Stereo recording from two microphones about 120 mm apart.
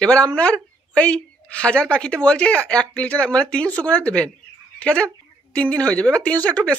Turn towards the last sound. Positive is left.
turn(degrees=10)  # may be behind; listen again after turning